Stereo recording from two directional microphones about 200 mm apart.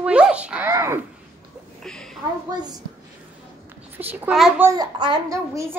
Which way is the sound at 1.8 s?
5° left (ahead or behind).